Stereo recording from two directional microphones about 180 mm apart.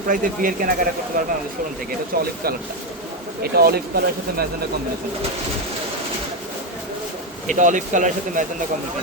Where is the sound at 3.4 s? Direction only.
60° right (ahead or behind).